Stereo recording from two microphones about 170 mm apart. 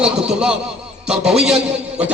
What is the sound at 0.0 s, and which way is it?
Speech, 5° right (ahead or behind).